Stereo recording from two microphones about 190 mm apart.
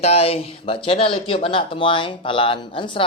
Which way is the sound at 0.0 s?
30° left (ahead or behind).